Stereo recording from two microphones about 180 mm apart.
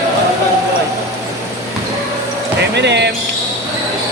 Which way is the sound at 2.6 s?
70° right (ahead or behind).